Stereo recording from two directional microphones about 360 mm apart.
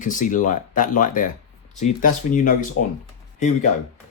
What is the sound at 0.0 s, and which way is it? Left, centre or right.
Speech, left.